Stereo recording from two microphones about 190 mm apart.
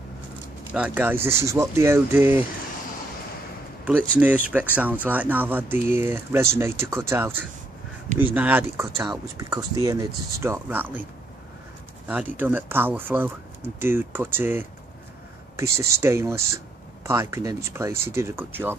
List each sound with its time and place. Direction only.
0.7 s speech: 10° right (ahead or behind)
4.2 s speech: 10° right (ahead or behind)
12.1 s speech: 10° right (ahead or behind)